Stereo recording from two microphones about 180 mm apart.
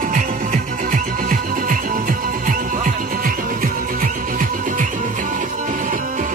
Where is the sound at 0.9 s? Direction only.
50° right (ahead or behind).